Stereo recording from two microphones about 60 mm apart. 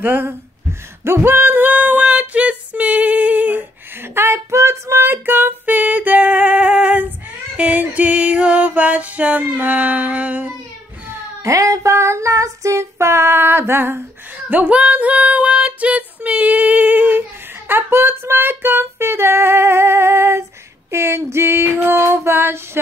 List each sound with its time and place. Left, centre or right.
0.0 s speech: right
1.0 s female singing: right
4.0 s female singing: right
7.5 s music: right
11.4 s female singing: right
14.5 s female singing: right